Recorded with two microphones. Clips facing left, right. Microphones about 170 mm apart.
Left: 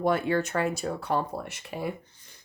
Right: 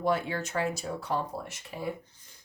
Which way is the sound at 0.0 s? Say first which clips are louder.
Left 4 dB; 60° left (ahead or behind).